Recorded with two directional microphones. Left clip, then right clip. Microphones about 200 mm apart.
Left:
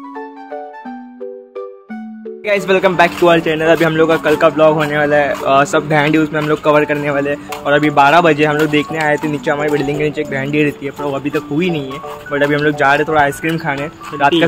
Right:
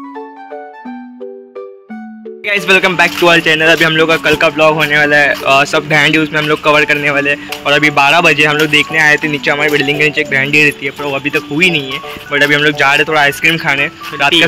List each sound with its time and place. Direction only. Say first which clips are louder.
2.4 s a man's voice: right 3 dB; centre (ahead or behind)